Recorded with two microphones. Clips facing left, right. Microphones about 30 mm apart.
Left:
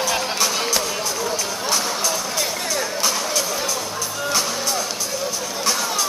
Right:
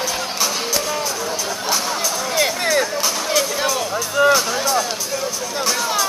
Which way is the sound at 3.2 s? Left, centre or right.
Right.